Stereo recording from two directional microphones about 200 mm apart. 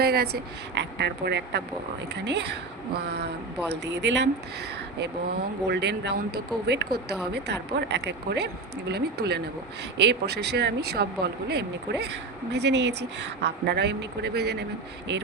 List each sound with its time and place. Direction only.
0.0 s speech: 50° right (ahead or behind)